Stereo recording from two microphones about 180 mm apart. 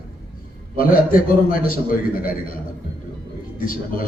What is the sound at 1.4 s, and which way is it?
Speech, 50° left (ahead or behind).